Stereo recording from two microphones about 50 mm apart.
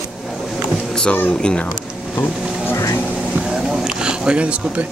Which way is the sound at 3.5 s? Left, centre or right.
Centre.